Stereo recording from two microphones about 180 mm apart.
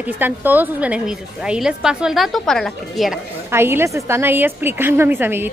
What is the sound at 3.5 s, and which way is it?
A woman's voice, 15° right (ahead or behind).